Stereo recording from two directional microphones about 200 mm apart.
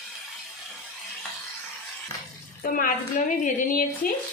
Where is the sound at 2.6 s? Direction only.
40° left (ahead or behind).